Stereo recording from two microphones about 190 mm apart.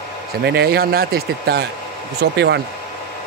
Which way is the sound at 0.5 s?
55° right (ahead or behind).